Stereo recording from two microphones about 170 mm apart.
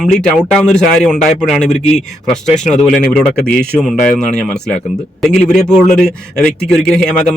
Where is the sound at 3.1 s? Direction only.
5° left (ahead or behind).